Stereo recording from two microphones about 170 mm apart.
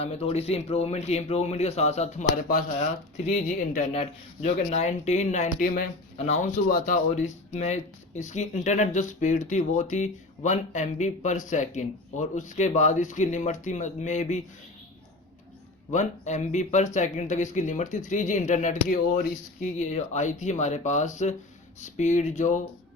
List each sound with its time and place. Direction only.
0.0 s speech: 35° left (ahead or behind); by 2.9 s 55° left (ahead or behind)
3.2 s speech: 45° left (ahead or behind)
6.1 s speech: 40° left (ahead or behind)
6.7 s speech: 55° left (ahead or behind)
15.9 s speech: 45° left (ahead or behind)